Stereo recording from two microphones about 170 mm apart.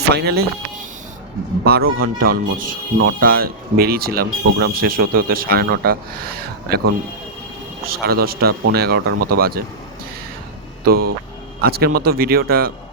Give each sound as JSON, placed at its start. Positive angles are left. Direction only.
{"t": 0.1, "sound": "speech", "side_deg": -70}
{"t": 1.6, "sound": "speech", "side_deg": -65}
{"t": 8.0, "sound": "speech", "side_deg": -65}
{"t": 10.8, "sound": "speech", "side_deg": -60}